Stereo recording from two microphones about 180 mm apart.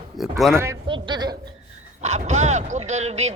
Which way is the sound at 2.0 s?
40° right (ahead or behind).